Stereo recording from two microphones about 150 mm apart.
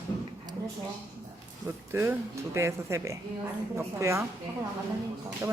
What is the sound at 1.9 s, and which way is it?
Speech, 20° right (ahead or behind).